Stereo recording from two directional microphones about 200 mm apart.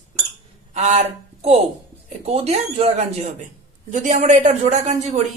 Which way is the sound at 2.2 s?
30° right (ahead or behind).